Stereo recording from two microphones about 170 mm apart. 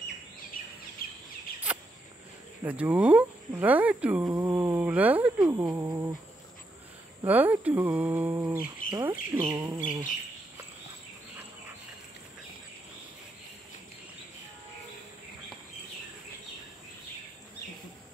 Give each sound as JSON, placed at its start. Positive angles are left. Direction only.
{"t": 2.6, "sound": "speech", "side_deg": -10}
{"t": 7.2, "sound": "bird", "side_deg": -10}